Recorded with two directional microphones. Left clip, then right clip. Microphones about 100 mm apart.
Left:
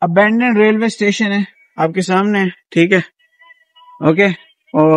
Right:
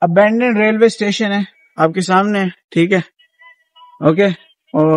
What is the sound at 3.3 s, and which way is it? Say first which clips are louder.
Music: right 1 dB; 45° right (ahead or behind).